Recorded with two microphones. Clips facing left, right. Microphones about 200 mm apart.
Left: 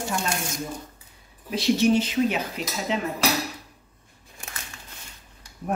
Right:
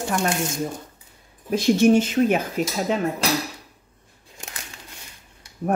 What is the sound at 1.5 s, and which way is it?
Speech, 50° right (ahead or behind).